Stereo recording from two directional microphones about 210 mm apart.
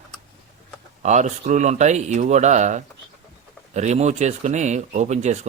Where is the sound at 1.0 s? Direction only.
35° right (ahead or behind).